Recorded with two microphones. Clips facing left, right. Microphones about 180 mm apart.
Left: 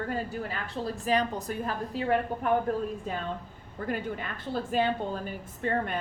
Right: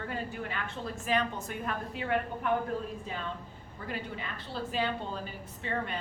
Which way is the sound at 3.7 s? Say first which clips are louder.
Left 6 dB; 50° left (ahead or behind).